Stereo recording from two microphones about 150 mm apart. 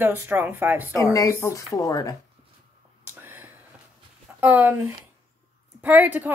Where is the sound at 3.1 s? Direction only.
15° right (ahead or behind).